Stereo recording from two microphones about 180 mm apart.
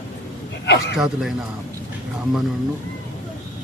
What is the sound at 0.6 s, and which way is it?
Speech, 75° left (ahead or behind).